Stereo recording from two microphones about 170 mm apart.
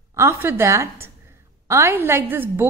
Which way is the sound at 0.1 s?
15° right (ahead or behind).